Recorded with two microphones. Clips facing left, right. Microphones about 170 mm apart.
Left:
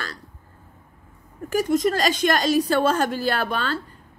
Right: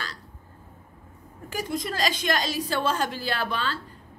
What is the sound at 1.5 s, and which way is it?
A woman's voice, 45° left (ahead or behind).